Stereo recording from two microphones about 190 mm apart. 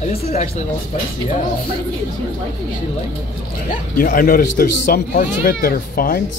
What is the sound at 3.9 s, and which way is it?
Speech, 45° left (ahead or behind).